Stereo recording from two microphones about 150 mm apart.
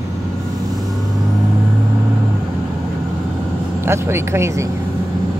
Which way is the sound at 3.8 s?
15° right (ahead or behind).